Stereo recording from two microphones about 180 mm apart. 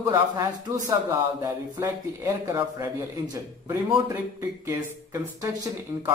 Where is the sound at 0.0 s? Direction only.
20° right (ahead or behind).